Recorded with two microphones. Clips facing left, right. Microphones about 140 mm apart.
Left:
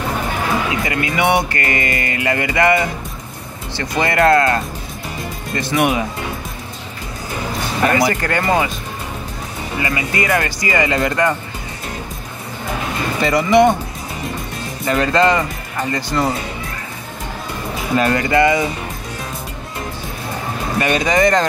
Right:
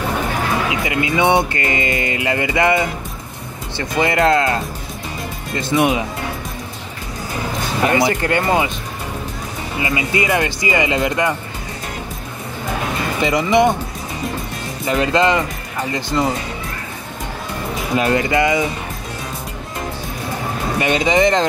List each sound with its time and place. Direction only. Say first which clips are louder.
0.8 s speech: right 3 dB; 15° right (ahead or behind)
4.3 s speech: left 2 dB; 15° right (ahead or behind)
5.6 s speech: right 1 dB; 20° right (ahead or behind)
7.8 s speech: even; 15° right (ahead or behind)
9.8 s speech: right 1 dB; 15° right (ahead or behind)
13.2 s speech: left 2 dB; 15° right (ahead or behind)
14.9 s speech: left 1 dB; 15° right (ahead or behind)
17.9 s speech: left 1 dB; 10° right (ahead or behind)
20.8 s speech: even; 20° right (ahead or behind)